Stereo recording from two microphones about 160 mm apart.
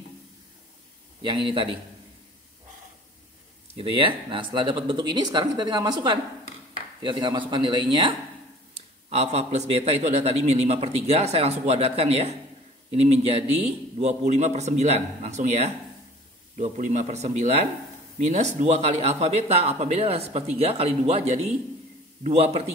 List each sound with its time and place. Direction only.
1.2 s speech: 30° right (ahead or behind)
3.7 s speech: 35° right (ahead or behind)
8.7 s a man's voice: 40° right (ahead or behind)